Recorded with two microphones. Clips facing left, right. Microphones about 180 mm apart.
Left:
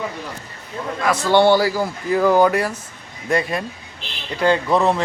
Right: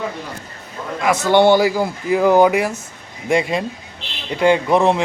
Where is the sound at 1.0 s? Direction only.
20° right (ahead or behind).